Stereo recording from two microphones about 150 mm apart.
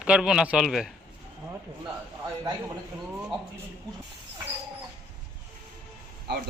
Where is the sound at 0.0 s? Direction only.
5° right (ahead or behind).